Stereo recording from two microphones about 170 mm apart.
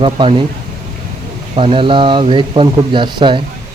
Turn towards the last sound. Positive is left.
turn(degrees=-30)  # may be behind; listen again after turning